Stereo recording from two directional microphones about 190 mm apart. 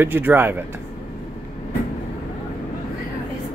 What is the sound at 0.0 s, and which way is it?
Speech, 10° right (ahead or behind).